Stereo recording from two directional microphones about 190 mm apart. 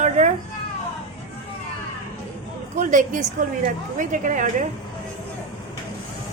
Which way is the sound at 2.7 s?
40° right (ahead or behind).